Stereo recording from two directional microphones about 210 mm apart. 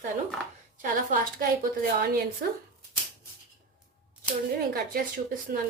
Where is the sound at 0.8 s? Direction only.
40° right (ahead or behind).